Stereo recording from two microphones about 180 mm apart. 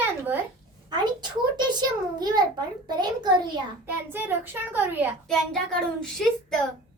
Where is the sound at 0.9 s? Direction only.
25° right (ahead or behind).